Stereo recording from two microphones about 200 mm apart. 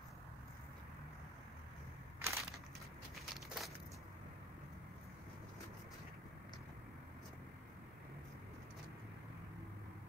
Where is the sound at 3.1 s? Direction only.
Centre (ahead or behind).